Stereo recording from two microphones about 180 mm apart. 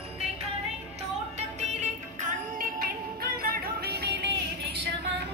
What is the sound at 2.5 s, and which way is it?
Music, 55° right (ahead or behind).